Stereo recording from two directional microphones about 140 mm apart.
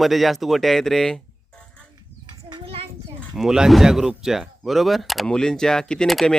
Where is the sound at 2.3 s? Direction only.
35° right (ahead or behind).